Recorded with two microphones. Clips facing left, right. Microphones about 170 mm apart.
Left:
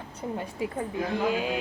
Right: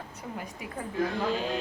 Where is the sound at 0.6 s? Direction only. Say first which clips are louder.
Left 10 dB; 25° left (ahead or behind).